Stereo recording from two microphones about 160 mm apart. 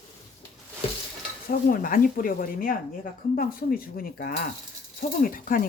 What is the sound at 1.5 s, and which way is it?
Speech, 65° left (ahead or behind).